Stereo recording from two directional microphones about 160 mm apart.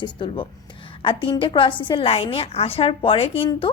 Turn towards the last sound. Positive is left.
turn(degrees=35)  # may be behind; listen again after turning